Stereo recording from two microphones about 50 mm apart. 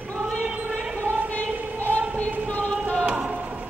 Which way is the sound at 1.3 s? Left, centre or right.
Left.